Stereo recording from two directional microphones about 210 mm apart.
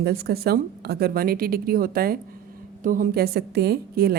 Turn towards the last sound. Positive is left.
turn(degrees=-45)  # may be behind; listen again after turning